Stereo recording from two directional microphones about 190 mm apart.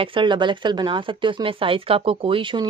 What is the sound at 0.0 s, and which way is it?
Speech, 25° right (ahead or behind).